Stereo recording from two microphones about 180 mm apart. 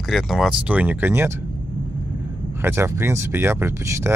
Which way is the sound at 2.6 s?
15° right (ahead or behind).